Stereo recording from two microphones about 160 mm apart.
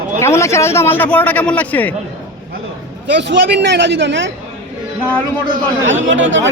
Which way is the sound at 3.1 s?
90° right.